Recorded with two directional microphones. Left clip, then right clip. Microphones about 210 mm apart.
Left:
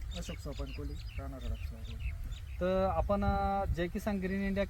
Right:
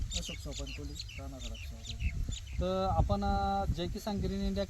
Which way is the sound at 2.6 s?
20° left (ahead or behind).